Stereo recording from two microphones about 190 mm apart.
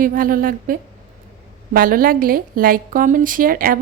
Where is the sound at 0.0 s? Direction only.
45° right (ahead or behind).